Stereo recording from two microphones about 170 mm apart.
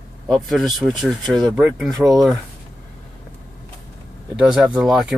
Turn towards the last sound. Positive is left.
turn(degrees=-5)  # may be behind; listen again after turning